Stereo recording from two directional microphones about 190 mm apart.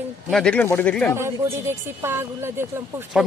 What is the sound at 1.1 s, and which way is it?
Speech, 15° right (ahead or behind).